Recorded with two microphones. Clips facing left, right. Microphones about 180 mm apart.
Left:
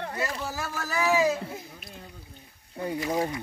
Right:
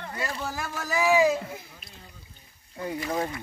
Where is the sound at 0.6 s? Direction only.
15° right (ahead or behind).